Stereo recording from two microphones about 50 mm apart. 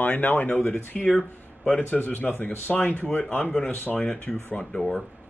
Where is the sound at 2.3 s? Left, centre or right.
Left.